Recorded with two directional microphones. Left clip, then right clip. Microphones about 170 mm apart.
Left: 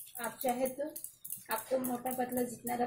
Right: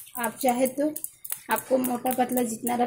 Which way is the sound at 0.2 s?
50° right (ahead or behind).